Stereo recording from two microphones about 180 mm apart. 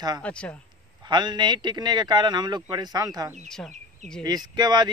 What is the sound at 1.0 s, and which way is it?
Speech, 25° right (ahead or behind).